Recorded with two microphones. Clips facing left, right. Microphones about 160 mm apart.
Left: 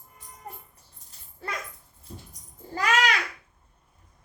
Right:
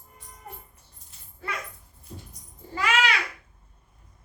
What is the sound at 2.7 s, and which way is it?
Babbling, 40° left (ahead or behind).